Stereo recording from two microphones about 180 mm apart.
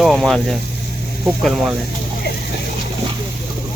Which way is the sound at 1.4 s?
Centre (ahead or behind).